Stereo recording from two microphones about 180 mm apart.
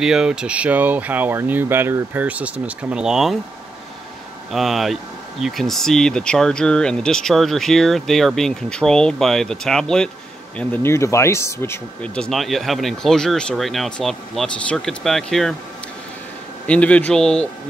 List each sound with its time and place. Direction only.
0.0 s speech: 5° right (ahead or behind)
4.5 s speech: centre (ahead or behind)
16.6 s speech: 5° left (ahead or behind)